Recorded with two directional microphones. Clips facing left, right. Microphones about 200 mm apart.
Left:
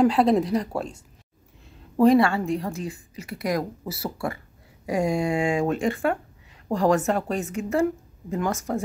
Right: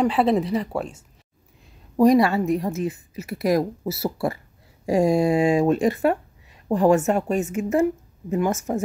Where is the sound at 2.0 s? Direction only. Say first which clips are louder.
Right 1 dB; 20° right (ahead or behind).